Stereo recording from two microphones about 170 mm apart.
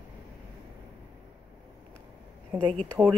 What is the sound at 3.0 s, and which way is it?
Speech, 10° right (ahead or behind).